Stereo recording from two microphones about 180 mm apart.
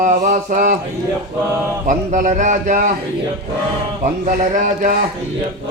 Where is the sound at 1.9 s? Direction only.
45° right (ahead or behind).